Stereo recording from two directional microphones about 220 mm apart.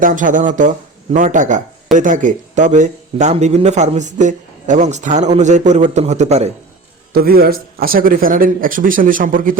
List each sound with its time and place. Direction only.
0.0 s speech: 35° right (ahead or behind)
7.1 s speech: 45° right (ahead or behind)